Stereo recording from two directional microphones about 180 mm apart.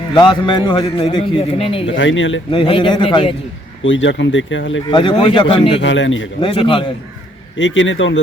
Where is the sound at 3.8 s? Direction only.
90° left.